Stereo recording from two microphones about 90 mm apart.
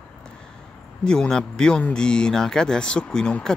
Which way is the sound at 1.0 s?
10° left (ahead or behind).